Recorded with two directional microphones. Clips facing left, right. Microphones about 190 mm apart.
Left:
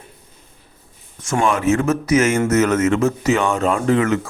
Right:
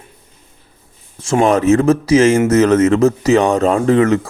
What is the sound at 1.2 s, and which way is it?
Speech, 35° right (ahead or behind).